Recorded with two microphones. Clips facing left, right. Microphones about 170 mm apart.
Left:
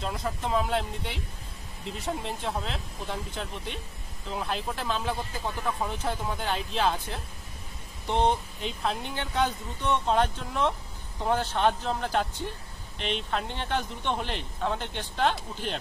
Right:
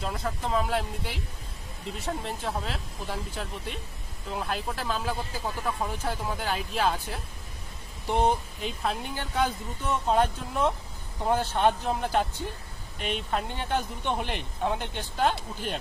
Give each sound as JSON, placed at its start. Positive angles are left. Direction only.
{"t": 0.0, "sound": "speech", "side_deg": 0}
{"t": 13.3, "sound": "speech", "side_deg": -5}